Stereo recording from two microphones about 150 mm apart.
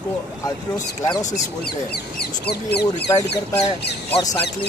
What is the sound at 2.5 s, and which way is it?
Speech, 90° left.